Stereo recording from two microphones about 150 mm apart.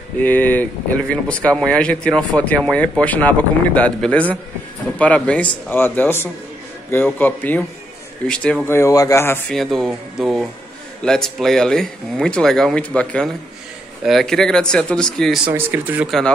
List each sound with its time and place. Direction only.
0.2 s speech: 10° left (ahead or behind)
8.7 s speech: 20° left (ahead or behind)
9.5 s speech: centre (ahead or behind)
15.4 s speech: 10° right (ahead or behind)